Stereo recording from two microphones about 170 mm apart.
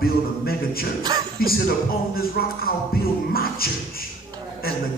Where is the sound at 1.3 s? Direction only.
60° left (ahead or behind).